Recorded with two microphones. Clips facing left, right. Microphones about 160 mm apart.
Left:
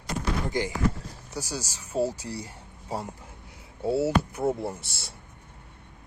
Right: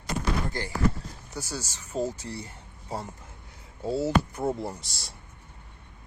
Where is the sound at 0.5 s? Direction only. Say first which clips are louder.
Left 1 dB; 15° left (ahead or behind).